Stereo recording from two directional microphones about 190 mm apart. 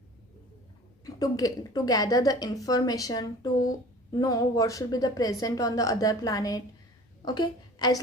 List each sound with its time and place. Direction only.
1.0 s a woman's voice: 20° left (ahead or behind)